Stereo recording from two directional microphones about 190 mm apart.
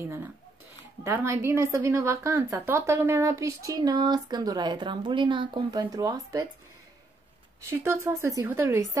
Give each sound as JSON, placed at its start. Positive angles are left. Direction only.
{"t": 1.0, "sound": "a woman's voice", "side_deg": -15}
{"t": 7.8, "sound": "a woman's voice", "side_deg": -15}